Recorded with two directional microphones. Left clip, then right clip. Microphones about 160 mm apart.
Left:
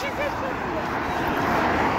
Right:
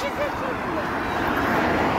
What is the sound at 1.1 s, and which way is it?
Vehicle, 20° right (ahead or behind).